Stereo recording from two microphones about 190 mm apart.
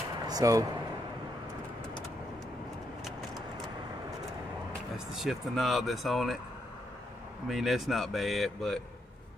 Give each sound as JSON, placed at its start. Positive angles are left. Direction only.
{"t": 0.3, "sound": "speech", "side_deg": -20}
{"t": 4.9, "sound": "speech", "side_deg": 0}
{"t": 7.4, "sound": "speech", "side_deg": 0}